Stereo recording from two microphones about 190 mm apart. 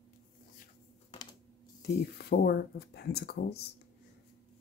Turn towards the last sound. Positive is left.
turn(degrees=60)  # may be behind; listen again after turning